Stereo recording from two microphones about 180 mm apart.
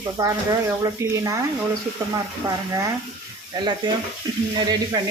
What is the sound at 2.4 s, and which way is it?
Speech, 20° right (ahead or behind).